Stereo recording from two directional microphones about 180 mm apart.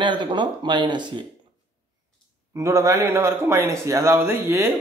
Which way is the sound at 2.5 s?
15° right (ahead or behind).